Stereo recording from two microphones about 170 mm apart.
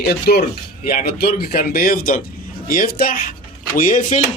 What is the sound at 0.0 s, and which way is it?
Speech, 70° left (ahead or behind).